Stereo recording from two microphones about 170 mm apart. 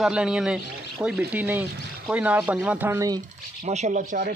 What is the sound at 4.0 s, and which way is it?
Speech, 65° right (ahead or behind).